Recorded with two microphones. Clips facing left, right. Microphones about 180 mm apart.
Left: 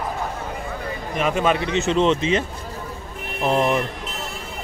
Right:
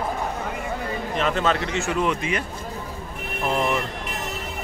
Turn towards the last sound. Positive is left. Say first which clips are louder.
# left 4 dB
turn(degrees=20)  # may be behind; listen again after turning